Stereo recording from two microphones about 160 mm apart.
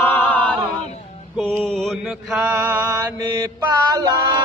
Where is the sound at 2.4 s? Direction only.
15° right (ahead or behind).